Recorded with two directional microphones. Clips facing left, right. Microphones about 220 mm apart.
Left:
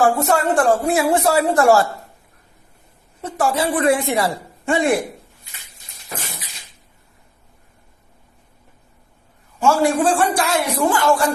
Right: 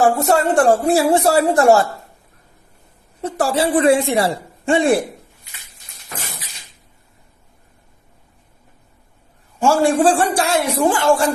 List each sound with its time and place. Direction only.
0.0 s speech: 30° right (ahead or behind)
3.2 s speech: 35° right (ahead or behind)
9.6 s speech: 30° right (ahead or behind)